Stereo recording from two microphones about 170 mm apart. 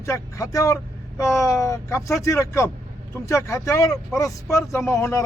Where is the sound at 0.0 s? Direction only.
20° left (ahead or behind).